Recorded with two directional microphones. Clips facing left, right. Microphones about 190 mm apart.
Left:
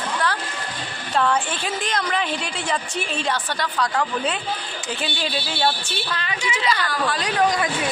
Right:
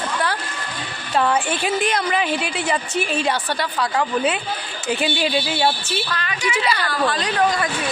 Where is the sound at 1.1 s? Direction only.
10° right (ahead or behind).